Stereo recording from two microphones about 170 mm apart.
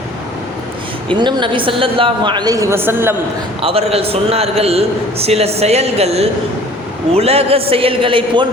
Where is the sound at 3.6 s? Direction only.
35° right (ahead or behind).